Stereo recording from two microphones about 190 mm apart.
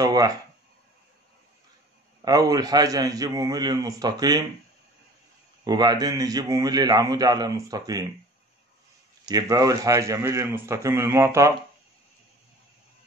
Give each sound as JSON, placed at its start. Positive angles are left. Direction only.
{"t": 0.0, "sound": "speech", "side_deg": -20}
{"t": 2.2, "sound": "a man's voice", "side_deg": -20}
{"t": 5.6, "sound": "a man's voice", "side_deg": -20}
{"t": 9.2, "sound": "a man's voice", "side_deg": -20}